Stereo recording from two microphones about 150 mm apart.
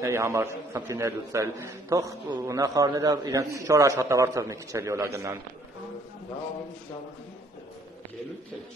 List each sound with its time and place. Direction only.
0.0 s a man's voice: 20° right (ahead or behind)